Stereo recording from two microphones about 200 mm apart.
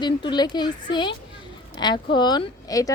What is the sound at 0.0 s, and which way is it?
A woman's voice, 20° left (ahead or behind).